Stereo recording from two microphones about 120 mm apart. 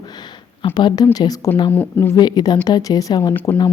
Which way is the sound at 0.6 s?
40° left (ahead or behind).